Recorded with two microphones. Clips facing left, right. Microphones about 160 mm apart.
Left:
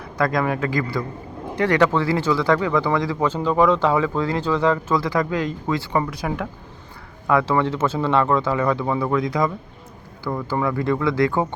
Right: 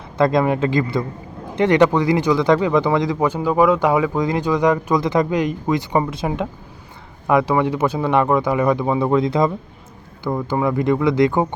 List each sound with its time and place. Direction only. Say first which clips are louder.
0.2 s speech: right 5 dB; 25° right (ahead or behind)